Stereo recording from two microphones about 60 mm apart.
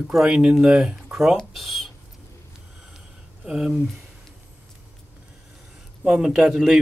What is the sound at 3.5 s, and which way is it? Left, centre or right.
Speech, centre.